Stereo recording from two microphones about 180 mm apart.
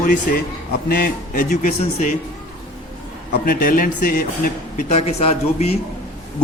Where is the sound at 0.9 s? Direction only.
55° left (ahead or behind).